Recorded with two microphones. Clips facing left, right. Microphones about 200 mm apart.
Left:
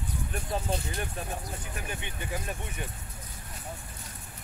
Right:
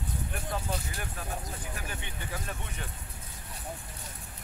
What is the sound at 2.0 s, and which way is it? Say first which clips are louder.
Speech: left 3 dB; 15° left (ahead or behind).